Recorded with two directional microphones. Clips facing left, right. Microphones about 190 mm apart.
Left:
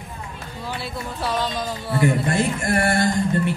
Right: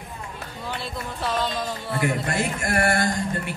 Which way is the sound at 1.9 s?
25° left (ahead or behind).